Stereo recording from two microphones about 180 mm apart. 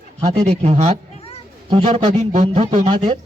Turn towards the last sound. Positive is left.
turn(degrees=-35)  # may be behind; listen again after turning